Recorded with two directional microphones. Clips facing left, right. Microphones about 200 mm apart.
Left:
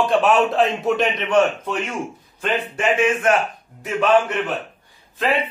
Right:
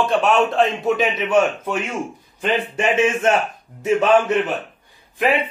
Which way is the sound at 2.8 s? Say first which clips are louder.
Even; 25° right (ahead or behind).